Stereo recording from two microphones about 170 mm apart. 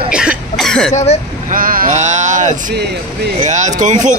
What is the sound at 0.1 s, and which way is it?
Cough, 5° right (ahead or behind).